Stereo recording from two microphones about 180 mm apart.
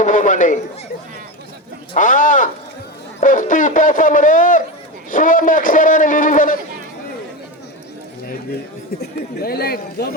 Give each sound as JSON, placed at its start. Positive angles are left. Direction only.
{"t": 0.0, "sound": "a sound", "side_deg": 45}
{"t": 2.0, "sound": "a man's voice", "side_deg": 45}
{"t": 9.0, "sound": "speech", "side_deg": 60}